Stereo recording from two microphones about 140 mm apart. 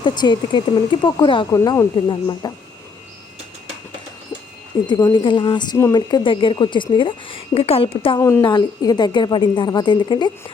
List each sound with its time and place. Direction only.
0.0 s a woman's voice: 30° left (ahead or behind)
1.5 s speech: 20° left (ahead or behind)
2.0 s a woman's voice: 35° left (ahead or behind)
4.9 s a woman's voice: 25° left (ahead or behind)